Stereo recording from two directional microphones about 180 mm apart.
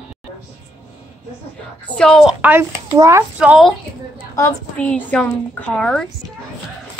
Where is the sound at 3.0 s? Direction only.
15° right (ahead or behind).